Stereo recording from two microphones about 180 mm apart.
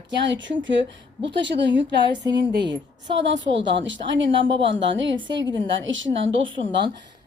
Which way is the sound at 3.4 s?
90° right.